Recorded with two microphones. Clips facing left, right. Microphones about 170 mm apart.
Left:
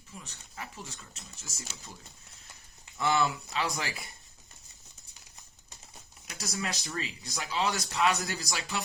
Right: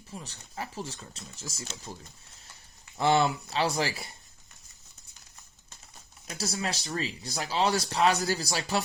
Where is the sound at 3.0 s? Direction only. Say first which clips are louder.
Right 4 dB; 35° right (ahead or behind).